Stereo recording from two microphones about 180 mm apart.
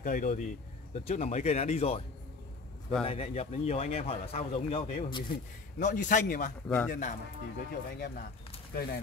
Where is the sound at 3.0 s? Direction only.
35° left (ahead or behind).